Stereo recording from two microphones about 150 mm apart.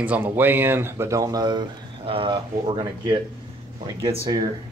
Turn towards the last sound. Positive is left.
turn(degrees=-25)  # may be behind; listen again after turning